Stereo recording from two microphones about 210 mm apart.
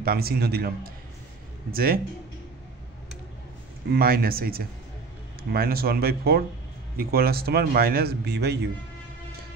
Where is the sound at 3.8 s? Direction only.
45° right (ahead or behind).